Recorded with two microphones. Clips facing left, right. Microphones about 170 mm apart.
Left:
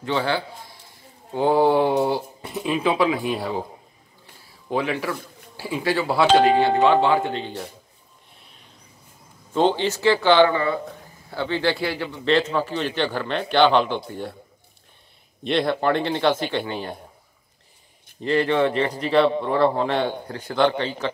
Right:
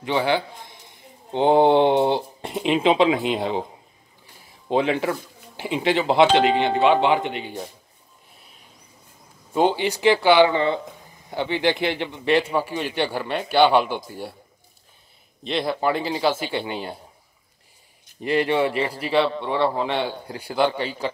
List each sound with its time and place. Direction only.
0.0 s a man's voice: 15° right (ahead or behind)
9.5 s speech: 10° right (ahead or behind)
15.4 s a man's voice: centre (ahead or behind)
18.2 s a man's voice: 15° right (ahead or behind)